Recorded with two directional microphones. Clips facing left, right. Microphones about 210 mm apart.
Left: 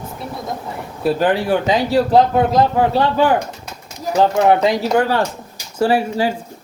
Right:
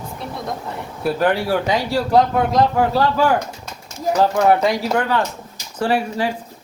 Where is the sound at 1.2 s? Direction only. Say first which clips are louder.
Even; centre (ahead or behind).